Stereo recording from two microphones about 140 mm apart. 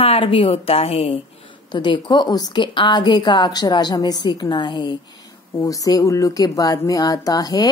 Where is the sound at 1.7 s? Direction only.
30° left (ahead or behind).